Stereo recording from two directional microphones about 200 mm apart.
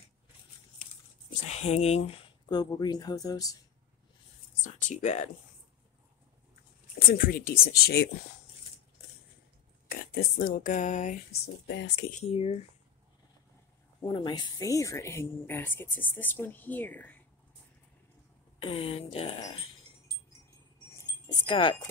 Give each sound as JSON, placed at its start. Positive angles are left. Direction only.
{"t": 1.5, "sound": "speech", "side_deg": 30}
{"t": 2.5, "sound": "speech", "side_deg": 20}
{"t": 4.8, "sound": "speech", "side_deg": 35}
{"t": 7.1, "sound": "speech", "side_deg": 45}
{"t": 9.8, "sound": "speech", "side_deg": 45}
{"t": 11.6, "sound": "speech", "side_deg": 60}
{"t": 12.2, "sound": "speech", "side_deg": 30}
{"t": 14.0, "sound": "speech", "side_deg": 20}
{"t": 18.6, "sound": "speech", "side_deg": 25}
{"t": 21.0, "sound": "wind chime", "side_deg": 20}